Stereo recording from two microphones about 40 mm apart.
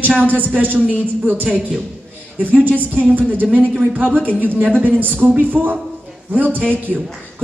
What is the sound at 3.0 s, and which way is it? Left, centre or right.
Speech, right.